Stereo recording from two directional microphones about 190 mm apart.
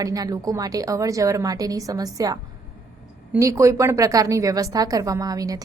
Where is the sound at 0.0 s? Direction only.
20° right (ahead or behind).